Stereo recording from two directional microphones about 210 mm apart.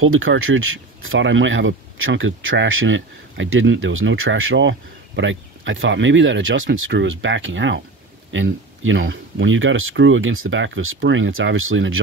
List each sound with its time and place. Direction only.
0.0 s speech: 70° right (ahead or behind)